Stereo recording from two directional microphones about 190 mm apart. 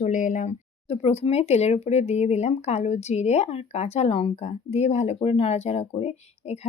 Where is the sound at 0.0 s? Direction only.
40° left (ahead or behind).